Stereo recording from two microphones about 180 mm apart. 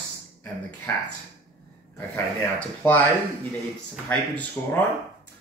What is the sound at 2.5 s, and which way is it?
Speech, 10° left (ahead or behind).